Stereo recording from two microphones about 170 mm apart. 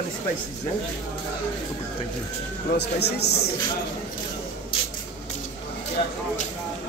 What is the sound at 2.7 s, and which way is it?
Speech, 75° left (ahead or behind).